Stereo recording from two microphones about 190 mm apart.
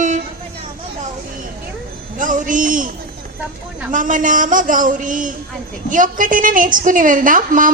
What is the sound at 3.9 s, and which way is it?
A woman's voice, 45° right (ahead or behind).